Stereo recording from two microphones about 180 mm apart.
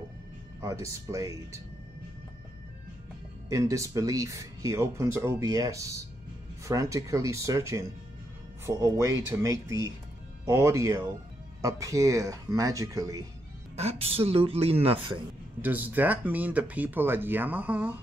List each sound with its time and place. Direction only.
0.6 s speech: 15° right (ahead or behind)
3.4 s speech: 15° right (ahead or behind)
13.7 s speech: 35° right (ahead or behind)
15.6 s speech: 10° right (ahead or behind)